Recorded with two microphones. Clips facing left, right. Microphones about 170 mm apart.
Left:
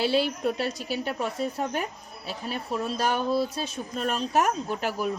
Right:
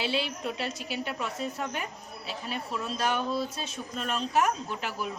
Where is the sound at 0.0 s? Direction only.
40° left (ahead or behind).